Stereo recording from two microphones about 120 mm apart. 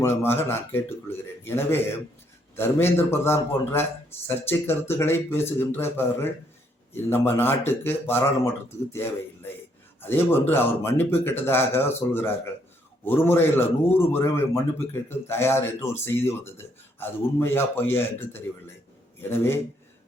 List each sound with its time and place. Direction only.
0.0 s a man's voice: 20° left (ahead or behind)